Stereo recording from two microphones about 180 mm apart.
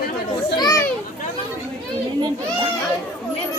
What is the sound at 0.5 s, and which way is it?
Speech, 20° left (ahead or behind).